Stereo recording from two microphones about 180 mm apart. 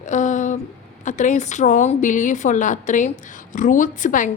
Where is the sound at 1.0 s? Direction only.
45° left (ahead or behind).